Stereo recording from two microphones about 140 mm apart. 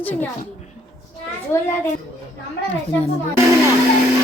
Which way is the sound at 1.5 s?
15° left (ahead or behind).